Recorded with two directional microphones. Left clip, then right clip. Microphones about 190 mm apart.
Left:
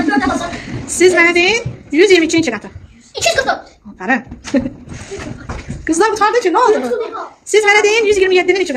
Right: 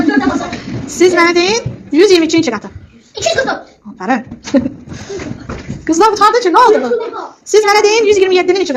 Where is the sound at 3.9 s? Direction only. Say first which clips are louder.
Right 1 dB; 15° left (ahead or behind).